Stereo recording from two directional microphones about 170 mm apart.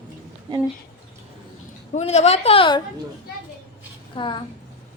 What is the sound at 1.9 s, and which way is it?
Speech, 40° left (ahead or behind).